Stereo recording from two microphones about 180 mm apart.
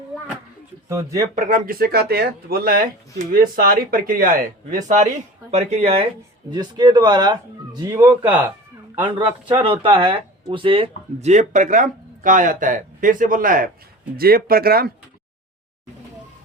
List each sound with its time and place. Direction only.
0.9 s speech: 15° right (ahead or behind)
1.4 s speech: 45° right (ahead or behind)
6.5 s speech: 25° right (ahead or behind)
9.0 s speech: 25° right (ahead or behind); by 14.9 s 60° right (ahead or behind)